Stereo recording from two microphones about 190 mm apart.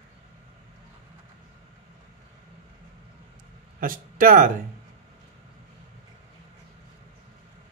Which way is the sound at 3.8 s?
45° right (ahead or behind).